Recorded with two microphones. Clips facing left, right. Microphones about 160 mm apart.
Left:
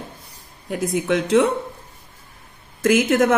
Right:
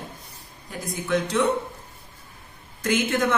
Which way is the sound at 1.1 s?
90° left.